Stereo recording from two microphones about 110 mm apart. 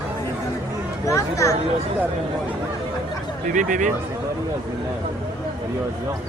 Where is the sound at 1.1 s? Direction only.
30° left (ahead or behind).